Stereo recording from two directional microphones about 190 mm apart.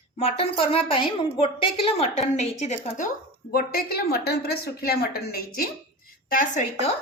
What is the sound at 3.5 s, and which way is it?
A woman's voice, 50° left (ahead or behind).